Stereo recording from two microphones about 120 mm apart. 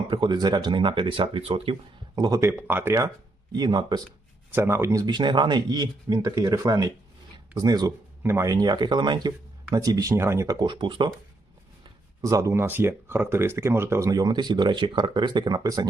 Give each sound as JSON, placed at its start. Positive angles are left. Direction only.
{"t": 0.1, "sound": "speech", "side_deg": -40}
{"t": 2.1, "sound": "speech", "side_deg": -35}
{"t": 2.4, "sound": "speech", "side_deg": -20}
{"t": 3.5, "sound": "speech", "side_deg": -35}
{"t": 4.5, "sound": "speech", "side_deg": -20}
{"t": 8.2, "sound": "speech", "side_deg": -20}
{"t": 12.2, "sound": "speech", "side_deg": -25}